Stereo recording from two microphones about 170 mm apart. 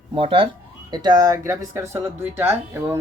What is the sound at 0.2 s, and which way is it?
Speech, 30° right (ahead or behind).